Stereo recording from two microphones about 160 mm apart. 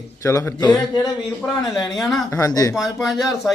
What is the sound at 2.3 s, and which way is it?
Speech, 20° left (ahead or behind).